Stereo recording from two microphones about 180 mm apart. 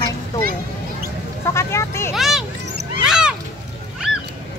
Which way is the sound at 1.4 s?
15° left (ahead or behind).